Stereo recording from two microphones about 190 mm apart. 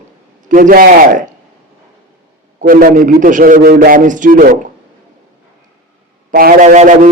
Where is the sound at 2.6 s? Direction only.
50° right (ahead or behind).